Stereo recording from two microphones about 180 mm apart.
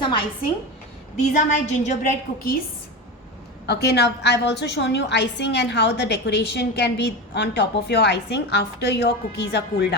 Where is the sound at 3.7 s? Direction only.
65° left (ahead or behind).